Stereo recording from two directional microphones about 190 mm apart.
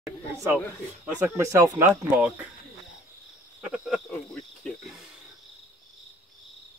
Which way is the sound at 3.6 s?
5° right (ahead or behind).